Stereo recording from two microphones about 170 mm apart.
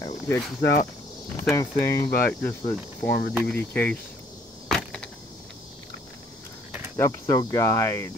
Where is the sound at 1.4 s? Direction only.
15° left (ahead or behind).